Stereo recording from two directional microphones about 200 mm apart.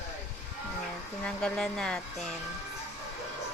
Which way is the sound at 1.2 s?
5° left (ahead or behind).